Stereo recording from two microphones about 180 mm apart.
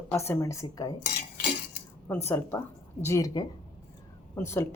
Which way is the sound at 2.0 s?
10° left (ahead or behind).